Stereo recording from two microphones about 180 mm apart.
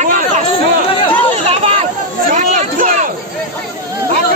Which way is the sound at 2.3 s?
45° right (ahead or behind).